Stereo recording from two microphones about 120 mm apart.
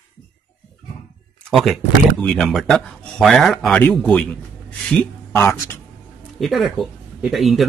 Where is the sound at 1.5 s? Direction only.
Centre (ahead or behind).